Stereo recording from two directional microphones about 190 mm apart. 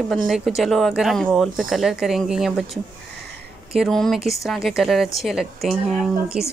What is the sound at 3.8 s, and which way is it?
Speech, centre (ahead or behind).